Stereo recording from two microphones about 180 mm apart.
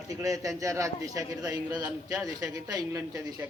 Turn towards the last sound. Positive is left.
turn(degrees=-20)  # may be behind; listen again after turning